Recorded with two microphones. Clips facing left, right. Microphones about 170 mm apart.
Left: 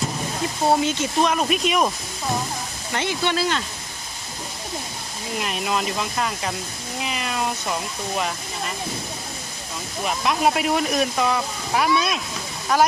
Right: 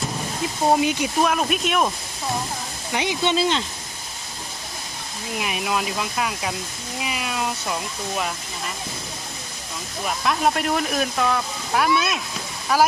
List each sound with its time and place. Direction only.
0.7 s speech: 15° right (ahead or behind)
2.9 s speech: 15° right (ahead or behind)
5.4 s speech: 5° right (ahead or behind)
10.1 s speech: 5° left (ahead or behind)